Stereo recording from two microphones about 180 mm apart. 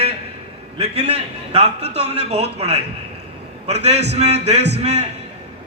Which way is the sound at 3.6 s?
35° right (ahead or behind).